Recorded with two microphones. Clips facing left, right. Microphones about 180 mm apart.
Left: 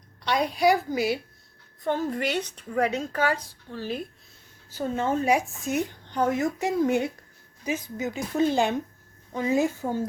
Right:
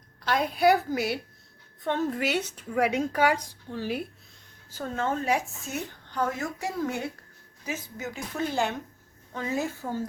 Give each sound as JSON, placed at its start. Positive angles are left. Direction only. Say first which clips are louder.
{"t": 0.3, "sound": "a woman's voice", "louder": "even", "side_deg": 0}
{"t": 4.7, "sound": "a woman's voice", "louder": "left 3 dB", "side_deg": 10}